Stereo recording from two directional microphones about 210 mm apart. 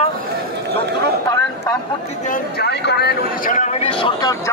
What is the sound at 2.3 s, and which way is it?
Speech, 50° left (ahead or behind).